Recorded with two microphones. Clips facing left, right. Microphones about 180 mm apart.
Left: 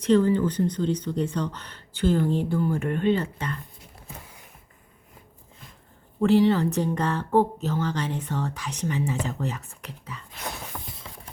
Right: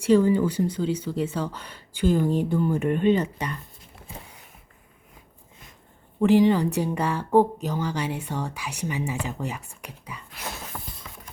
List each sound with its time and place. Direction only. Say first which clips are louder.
0.0 s speech: right 1 dB; 10° right (ahead or behind)
6.2 s speech: right 1 dB; 15° right (ahead or behind)